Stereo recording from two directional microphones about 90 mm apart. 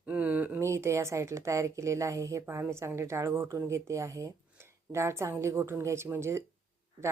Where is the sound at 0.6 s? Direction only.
30° right (ahead or behind).